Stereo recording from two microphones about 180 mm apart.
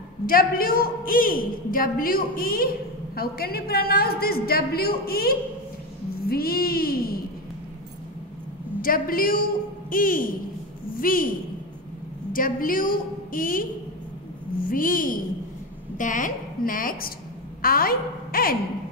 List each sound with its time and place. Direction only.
0.3 s a woman's voice: 55° left (ahead or behind)
8.8 s a woman's voice: 50° left (ahead or behind)
12.3 s a woman's voice: 50° left (ahead or behind)